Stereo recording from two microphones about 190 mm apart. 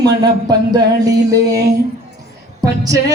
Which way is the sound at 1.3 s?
20° right (ahead or behind).